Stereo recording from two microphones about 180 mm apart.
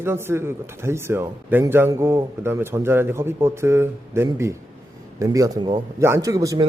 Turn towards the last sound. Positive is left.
turn(degrees=-20)  # may be behind; listen again after turning